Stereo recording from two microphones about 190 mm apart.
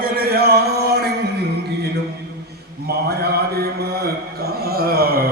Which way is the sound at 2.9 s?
60° right (ahead or behind).